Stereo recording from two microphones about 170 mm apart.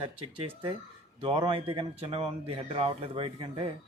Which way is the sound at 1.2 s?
35° right (ahead or behind).